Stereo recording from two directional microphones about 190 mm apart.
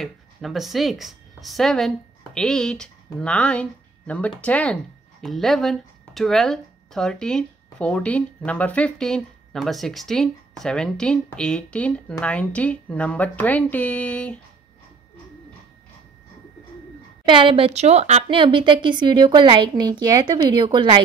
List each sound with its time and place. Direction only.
0.0 s speech: centre (ahead or behind)
17.2 s a woman's voice: 25° right (ahead or behind)